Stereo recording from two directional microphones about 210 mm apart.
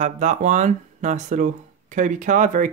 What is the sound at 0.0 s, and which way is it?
Speech, 35° right (ahead or behind).